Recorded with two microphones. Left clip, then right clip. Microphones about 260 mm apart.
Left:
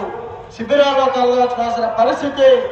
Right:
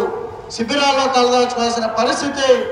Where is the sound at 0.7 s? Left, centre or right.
Right.